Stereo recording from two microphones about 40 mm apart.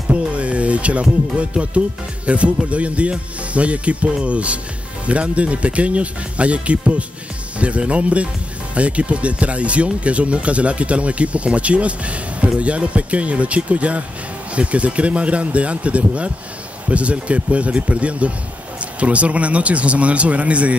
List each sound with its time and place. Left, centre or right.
0.1 s speech: right